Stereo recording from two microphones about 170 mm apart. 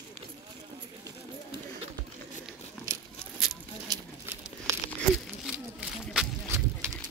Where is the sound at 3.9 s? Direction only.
20° right (ahead or behind).